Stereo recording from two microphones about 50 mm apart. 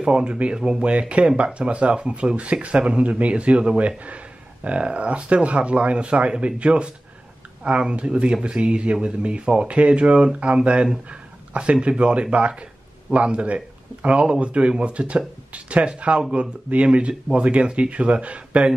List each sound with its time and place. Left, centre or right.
0.0 s speech: right
11.1 s a sound: right
12.0 s speech: right